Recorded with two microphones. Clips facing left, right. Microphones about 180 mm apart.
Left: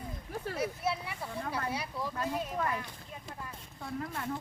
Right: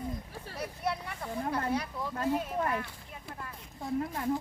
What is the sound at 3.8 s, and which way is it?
Speech, 25° right (ahead or behind).